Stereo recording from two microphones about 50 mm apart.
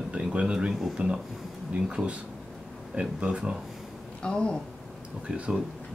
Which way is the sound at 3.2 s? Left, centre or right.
Centre.